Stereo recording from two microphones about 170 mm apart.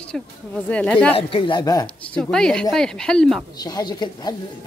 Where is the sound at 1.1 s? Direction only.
30° left (ahead or behind).